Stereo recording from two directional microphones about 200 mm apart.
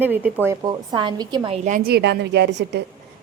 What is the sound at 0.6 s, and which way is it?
A woman's voice, 20° right (ahead or behind).